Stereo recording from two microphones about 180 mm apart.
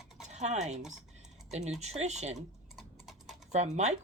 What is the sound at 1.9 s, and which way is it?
Speech, 40° right (ahead or behind).